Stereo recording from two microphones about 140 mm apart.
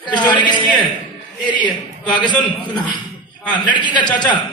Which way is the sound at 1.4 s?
35° left (ahead or behind).